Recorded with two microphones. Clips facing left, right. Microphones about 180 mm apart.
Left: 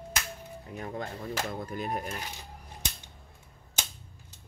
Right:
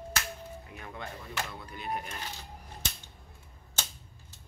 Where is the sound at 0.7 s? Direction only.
40° left (ahead or behind).